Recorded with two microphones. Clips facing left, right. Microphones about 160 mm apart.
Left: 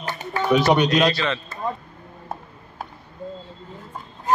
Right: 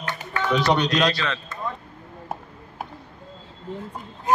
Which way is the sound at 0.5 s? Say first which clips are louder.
Left 4 dB; 5° left (ahead or behind).